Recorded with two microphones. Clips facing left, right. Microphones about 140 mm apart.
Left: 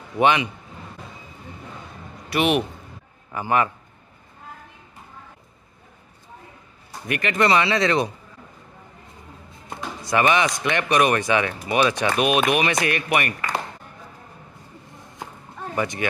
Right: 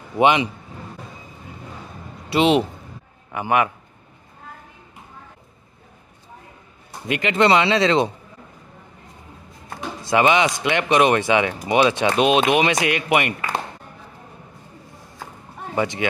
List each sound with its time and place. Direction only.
0.1 s a man's voice: 35° right (ahead or behind)
2.2 s a man's voice: 25° right (ahead or behind)
7.1 s speech: 20° right (ahead or behind)
9.8 s speech: 20° right (ahead or behind)
15.7 s speech: 20° right (ahead or behind)